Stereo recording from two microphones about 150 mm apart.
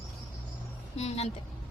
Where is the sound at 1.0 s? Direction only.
45° left (ahead or behind).